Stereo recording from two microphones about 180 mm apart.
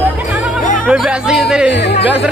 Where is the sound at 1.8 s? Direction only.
70° left (ahead or behind).